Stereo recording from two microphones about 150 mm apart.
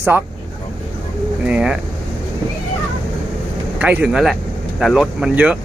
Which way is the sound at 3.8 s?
10° right (ahead or behind).